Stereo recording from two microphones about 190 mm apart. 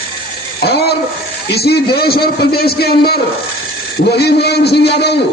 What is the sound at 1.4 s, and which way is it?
A man's voice, 55° left (ahead or behind).